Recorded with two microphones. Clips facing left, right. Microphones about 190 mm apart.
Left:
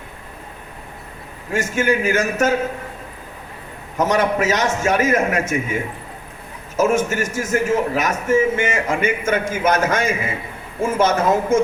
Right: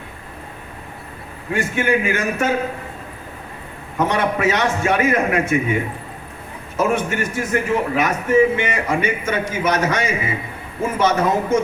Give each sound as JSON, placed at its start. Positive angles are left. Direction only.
{"t": 1.5, "sound": "a man's voice", "side_deg": 45}
{"t": 3.9, "sound": "a man's voice", "side_deg": 40}
{"t": 6.7, "sound": "a man's voice", "side_deg": 45}